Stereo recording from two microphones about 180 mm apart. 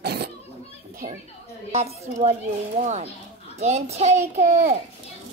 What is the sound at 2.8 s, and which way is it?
A child's voice, 40° right (ahead or behind).